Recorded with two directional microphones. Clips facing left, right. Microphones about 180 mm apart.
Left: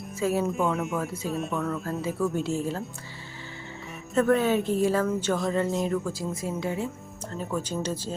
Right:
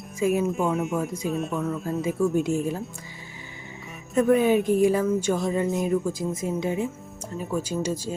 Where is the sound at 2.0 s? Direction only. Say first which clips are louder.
Right 6 dB; 15° right (ahead or behind).